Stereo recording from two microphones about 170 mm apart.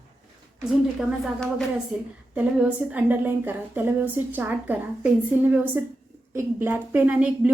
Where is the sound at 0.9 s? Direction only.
Centre (ahead or behind).